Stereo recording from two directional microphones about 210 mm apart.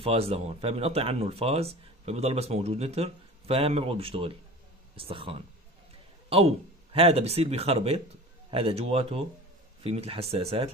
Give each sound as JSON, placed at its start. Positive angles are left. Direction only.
{"t": 0.0, "sound": "a man's voice", "side_deg": -30}